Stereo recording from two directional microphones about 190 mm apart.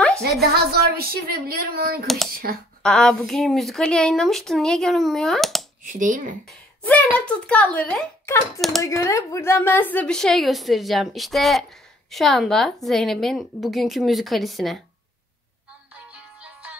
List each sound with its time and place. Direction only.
0.2 s speech: 55° right (ahead or behind)
2.0 s a woman's voice: centre (ahead or behind)
2.3 s speech: 50° right (ahead or behind)
2.8 s a woman's voice: 5° left (ahead or behind)
5.9 s speech: 40° right (ahead or behind)
6.8 s a child's voice: 10° left (ahead or behind)
8.8 s a woman's voice: 15° left (ahead or behind); by 14.8 s centre (ahead or behind)
16.1 s music: 5° right (ahead or behind)